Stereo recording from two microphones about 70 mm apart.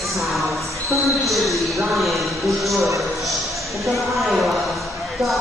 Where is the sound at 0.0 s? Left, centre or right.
Centre.